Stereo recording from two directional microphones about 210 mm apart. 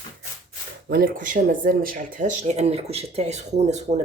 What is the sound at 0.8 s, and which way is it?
Speech, 45° right (ahead or behind).